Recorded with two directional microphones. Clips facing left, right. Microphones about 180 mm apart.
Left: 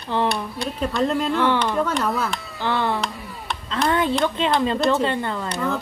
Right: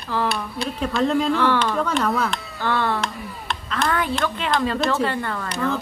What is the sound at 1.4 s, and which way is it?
Speech, 15° left (ahead or behind).